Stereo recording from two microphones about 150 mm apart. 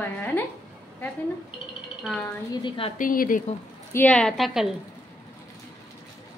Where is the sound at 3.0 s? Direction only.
65° left (ahead or behind).